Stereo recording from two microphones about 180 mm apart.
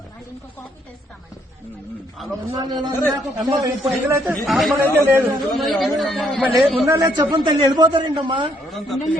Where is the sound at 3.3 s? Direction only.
20° right (ahead or behind).